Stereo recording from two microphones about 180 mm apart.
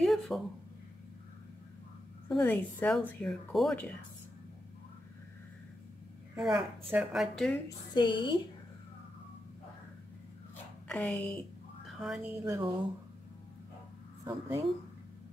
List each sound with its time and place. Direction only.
0.0 s a sound: centre (ahead or behind)
2.2 s speech: 5° left (ahead or behind)
6.3 s a woman's voice: centre (ahead or behind)
7.9 s a woman's voice: 25° left (ahead or behind)
10.9 s a sound: 10° left (ahead or behind)
12.4 s speech: 25° right (ahead or behind)
14.2 s speech: 20° right (ahead or behind)